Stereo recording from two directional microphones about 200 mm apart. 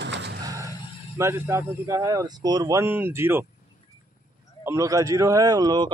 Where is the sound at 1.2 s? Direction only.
15° right (ahead or behind).